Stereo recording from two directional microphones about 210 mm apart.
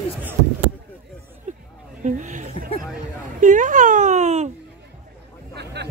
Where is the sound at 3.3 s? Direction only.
40° right (ahead or behind).